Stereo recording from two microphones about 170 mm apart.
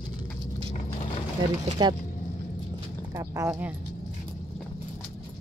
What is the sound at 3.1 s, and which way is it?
Speech, 20° right (ahead or behind).